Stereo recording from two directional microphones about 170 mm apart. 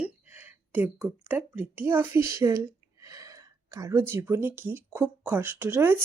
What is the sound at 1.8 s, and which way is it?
A woman's voice, 15° right (ahead or behind).